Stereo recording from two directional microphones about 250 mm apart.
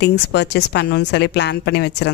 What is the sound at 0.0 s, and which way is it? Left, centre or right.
Speech, left.